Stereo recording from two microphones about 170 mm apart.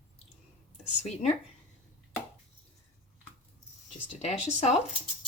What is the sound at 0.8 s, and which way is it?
Speech, 40° left (ahead or behind).